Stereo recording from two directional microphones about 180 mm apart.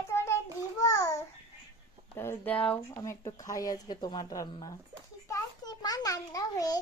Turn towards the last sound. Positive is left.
turn(degrees=20)  # may be behind; listen again after turning